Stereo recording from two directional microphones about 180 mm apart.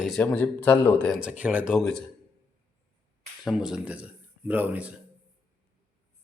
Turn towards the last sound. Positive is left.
turn(degrees=-10)  # may be behind; listen again after turning